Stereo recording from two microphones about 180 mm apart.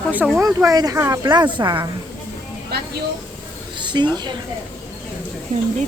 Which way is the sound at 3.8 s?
25° right (ahead or behind).